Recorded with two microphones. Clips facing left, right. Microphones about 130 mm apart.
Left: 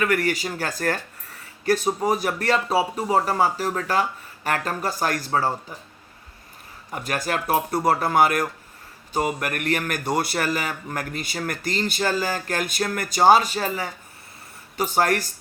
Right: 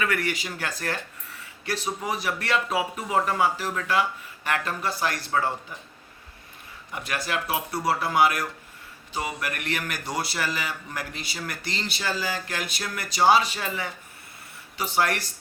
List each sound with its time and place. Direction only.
0.0 s speech: 45° left (ahead or behind)
6.9 s speech: 45° left (ahead or behind)